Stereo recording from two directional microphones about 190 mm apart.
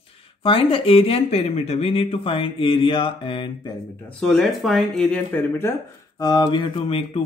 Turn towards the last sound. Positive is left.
turn(degrees=30)  # may be behind; listen again after turning